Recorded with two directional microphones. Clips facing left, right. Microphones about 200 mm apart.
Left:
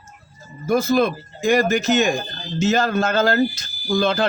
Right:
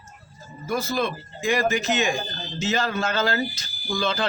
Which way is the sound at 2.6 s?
45° left (ahead or behind).